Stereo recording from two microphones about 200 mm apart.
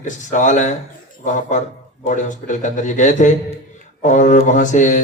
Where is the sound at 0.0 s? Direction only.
40° left (ahead or behind).